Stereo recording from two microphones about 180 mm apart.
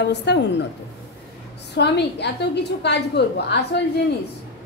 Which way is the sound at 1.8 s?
70° left (ahead or behind).